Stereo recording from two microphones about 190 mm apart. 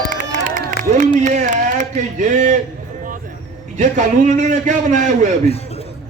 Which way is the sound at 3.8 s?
40° right (ahead or behind).